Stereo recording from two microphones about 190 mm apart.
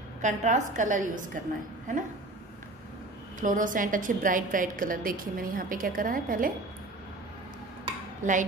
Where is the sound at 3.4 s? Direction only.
45° right (ahead or behind).